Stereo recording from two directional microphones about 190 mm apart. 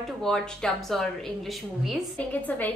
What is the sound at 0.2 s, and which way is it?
A woman's voice, centre (ahead or behind).